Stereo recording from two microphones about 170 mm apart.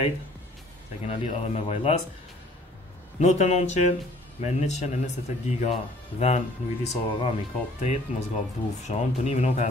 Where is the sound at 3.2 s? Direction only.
40° left (ahead or behind).